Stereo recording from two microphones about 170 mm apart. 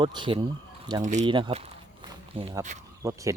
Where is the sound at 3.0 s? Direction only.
20° right (ahead or behind).